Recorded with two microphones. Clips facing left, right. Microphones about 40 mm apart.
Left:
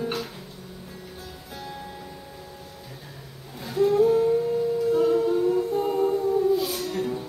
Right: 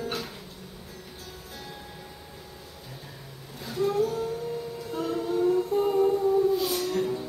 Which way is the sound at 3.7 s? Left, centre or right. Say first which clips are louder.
Left 6 dB; centre.